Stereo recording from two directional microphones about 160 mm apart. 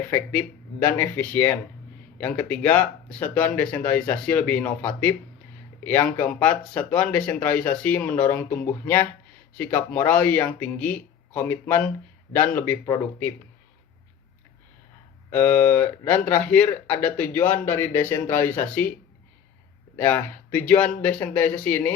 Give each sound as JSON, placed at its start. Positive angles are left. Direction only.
{"t": 0.1, "sound": "speech", "side_deg": 10}
{"t": 15.3, "sound": "speech", "side_deg": 10}
{"t": 20.0, "sound": "speech", "side_deg": 10}